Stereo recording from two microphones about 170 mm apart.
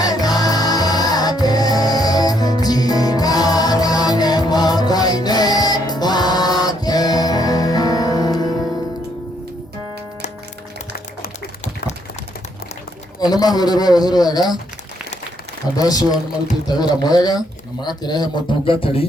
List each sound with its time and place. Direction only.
0.0 s music: 20° left (ahead or behind)
13.1 s speech: 25° left (ahead or behind)
15.8 s speech: 20° left (ahead or behind)